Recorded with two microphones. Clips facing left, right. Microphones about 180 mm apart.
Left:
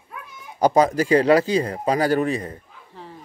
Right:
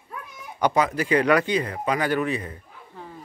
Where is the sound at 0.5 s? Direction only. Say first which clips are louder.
Left 5 dB; 35° left (ahead or behind).